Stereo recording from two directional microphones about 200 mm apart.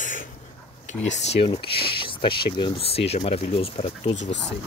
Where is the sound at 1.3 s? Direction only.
30° left (ahead or behind).